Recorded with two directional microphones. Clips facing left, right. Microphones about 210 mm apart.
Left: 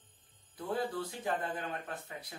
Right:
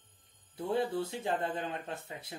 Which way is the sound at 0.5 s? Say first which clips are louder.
Right 4 dB; 25° right (ahead or behind).